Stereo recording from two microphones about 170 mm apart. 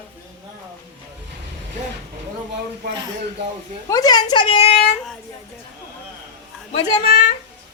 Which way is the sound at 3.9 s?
20° left (ahead or behind).